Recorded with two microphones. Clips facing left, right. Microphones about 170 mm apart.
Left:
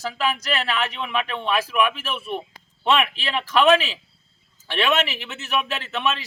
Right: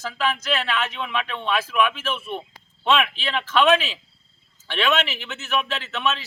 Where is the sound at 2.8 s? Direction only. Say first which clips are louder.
Even; 5° left (ahead or behind).